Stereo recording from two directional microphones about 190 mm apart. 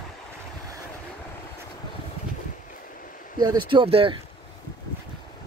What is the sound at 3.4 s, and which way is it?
Speech, 25° right (ahead or behind).